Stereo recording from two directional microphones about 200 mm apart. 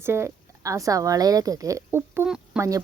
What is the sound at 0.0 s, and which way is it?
Speech, 10° right (ahead or behind).